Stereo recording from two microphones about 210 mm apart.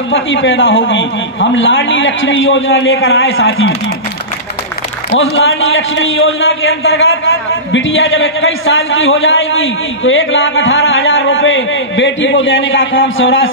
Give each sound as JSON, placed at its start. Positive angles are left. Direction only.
{"t": 0.1, "sound": "a man's voice", "side_deg": 65}
{"t": 5.3, "sound": "a man's voice", "side_deg": 70}